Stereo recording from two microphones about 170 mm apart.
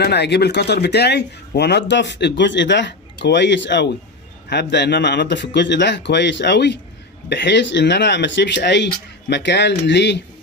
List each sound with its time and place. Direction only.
0.0 s speech: 75° left (ahead or behind)